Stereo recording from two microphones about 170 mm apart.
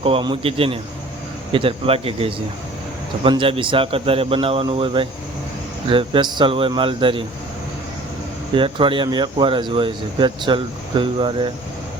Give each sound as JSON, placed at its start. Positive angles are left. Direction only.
{"t": 0.0, "sound": "a man's voice", "side_deg": -30}
{"t": 8.5, "sound": "speech", "side_deg": -30}